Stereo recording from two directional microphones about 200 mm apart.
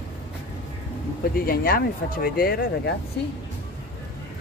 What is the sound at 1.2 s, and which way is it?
Speech, 50° left (ahead or behind).